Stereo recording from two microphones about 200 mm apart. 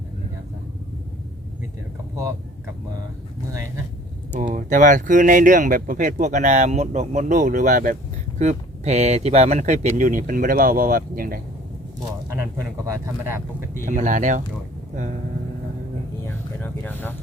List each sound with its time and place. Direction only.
4.5 s speech: 40° right (ahead or behind)
12.3 s speech: 15° right (ahead or behind)
13.8 s speech: 40° right (ahead or behind)
16.6 s speech: 10° left (ahead or behind)